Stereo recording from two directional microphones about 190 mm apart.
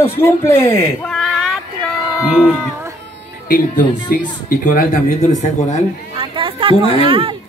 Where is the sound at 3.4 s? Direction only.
45° left (ahead or behind).